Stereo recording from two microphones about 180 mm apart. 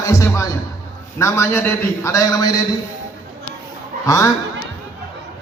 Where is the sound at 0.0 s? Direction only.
15° left (ahead or behind).